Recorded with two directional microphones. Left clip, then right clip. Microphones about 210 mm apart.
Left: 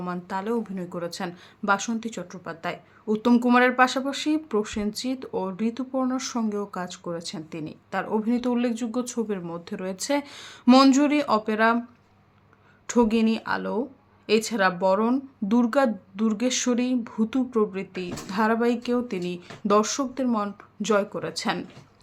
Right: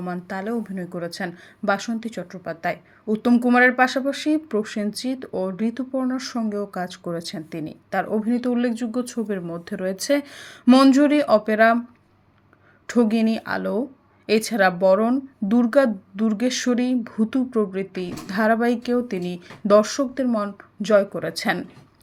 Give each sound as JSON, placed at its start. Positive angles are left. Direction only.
{"t": 0.0, "sound": "a woman's voice", "side_deg": -5}
{"t": 12.9, "sound": "a woman's voice", "side_deg": -10}